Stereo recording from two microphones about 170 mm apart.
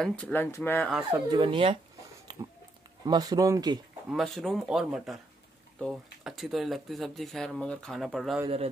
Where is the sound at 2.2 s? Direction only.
25° right (ahead or behind).